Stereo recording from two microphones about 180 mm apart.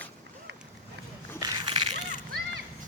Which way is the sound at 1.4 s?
25° right (ahead or behind).